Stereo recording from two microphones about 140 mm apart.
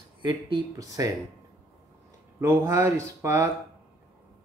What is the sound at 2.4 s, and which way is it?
A man's voice, 20° right (ahead or behind).